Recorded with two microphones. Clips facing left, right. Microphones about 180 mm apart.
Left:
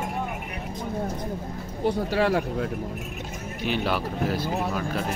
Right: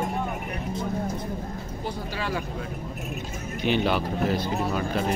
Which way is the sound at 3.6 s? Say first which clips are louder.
Right 3 dB; 5° left (ahead or behind).